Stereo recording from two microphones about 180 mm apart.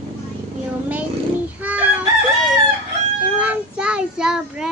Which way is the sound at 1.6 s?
10° right (ahead or behind).